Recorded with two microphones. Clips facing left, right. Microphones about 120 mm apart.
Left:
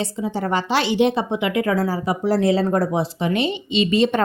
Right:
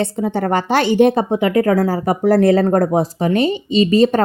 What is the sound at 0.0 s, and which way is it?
A woman's voice, 55° right (ahead or behind).